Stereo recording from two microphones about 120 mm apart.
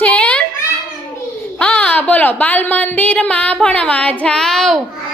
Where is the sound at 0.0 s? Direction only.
10° left (ahead or behind).